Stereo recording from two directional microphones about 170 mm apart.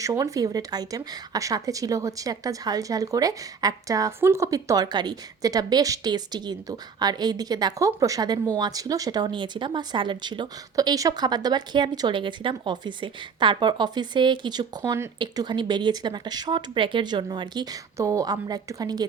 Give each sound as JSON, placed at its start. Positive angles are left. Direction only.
{"t": 0.0, "sound": "a woman's voice", "side_deg": -20}